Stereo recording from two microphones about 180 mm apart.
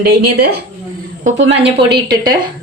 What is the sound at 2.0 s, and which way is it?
Speech, 25° right (ahead or behind).